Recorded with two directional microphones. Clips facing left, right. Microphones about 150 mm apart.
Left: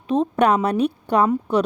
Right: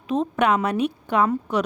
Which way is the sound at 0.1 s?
35° left (ahead or behind).